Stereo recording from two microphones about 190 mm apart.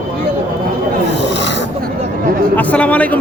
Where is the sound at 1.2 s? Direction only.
65° left (ahead or behind).